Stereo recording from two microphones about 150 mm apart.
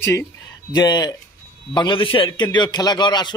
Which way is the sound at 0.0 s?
15° left (ahead or behind).